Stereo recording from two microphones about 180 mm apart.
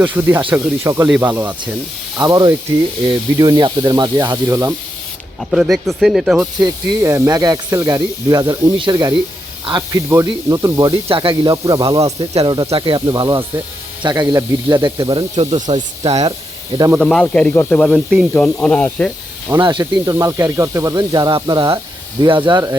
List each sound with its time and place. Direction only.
0.0 s speech: 10° right (ahead or behind)
5.4 s speech: centre (ahead or behind)
6.6 s speech: 20° right (ahead or behind)
12.2 s speech: 30° right (ahead or behind)
16.9 s speech: centre (ahead or behind)
19.5 s speech: 25° right (ahead or behind)